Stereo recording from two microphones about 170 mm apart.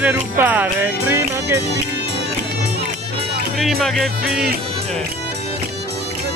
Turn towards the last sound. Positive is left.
turn(degrees=0)  # may be behind; listen again after turning